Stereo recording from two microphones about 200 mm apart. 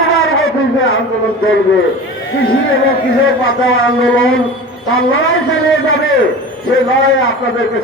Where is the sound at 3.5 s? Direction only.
90° left.